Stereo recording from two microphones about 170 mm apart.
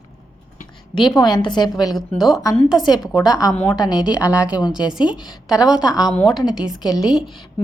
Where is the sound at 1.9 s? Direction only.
Centre (ahead or behind).